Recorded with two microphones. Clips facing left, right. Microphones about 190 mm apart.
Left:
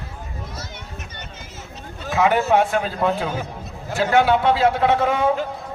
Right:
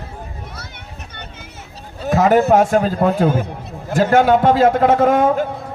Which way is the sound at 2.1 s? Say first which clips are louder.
Right 5 dB; 40° right (ahead or behind).